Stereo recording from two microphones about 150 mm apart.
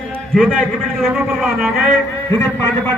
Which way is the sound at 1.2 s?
5° right (ahead or behind).